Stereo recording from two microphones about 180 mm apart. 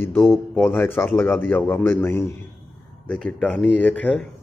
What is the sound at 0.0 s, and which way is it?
A man's voice, 15° left (ahead or behind).